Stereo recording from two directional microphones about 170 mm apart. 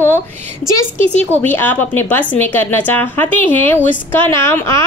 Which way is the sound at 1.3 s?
10° left (ahead or behind).